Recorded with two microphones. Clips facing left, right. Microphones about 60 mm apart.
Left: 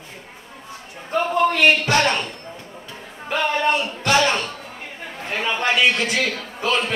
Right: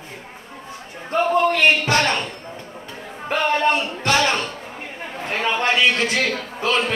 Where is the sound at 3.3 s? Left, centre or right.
Right.